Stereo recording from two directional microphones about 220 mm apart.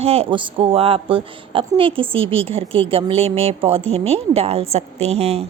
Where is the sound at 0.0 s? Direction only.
25° right (ahead or behind).